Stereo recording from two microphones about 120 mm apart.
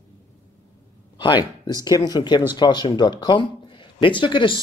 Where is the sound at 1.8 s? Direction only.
35° left (ahead or behind).